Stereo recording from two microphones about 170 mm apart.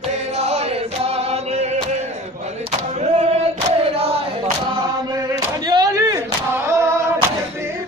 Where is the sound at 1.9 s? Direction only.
40° right (ahead or behind).